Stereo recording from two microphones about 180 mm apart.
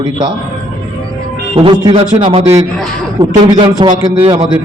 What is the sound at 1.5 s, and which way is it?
A man's voice, 25° right (ahead or behind).